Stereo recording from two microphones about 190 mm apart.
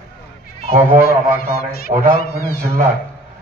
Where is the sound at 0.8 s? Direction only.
10° right (ahead or behind).